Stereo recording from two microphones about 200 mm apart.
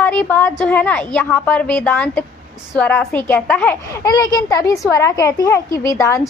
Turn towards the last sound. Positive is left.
turn(degrees=15)  # may be behind; listen again after turning